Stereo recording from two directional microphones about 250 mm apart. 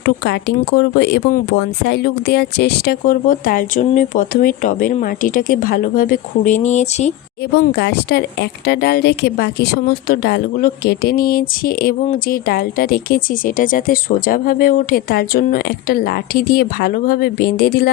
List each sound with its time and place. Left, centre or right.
0.0 s speech: left
7.5 s speech: left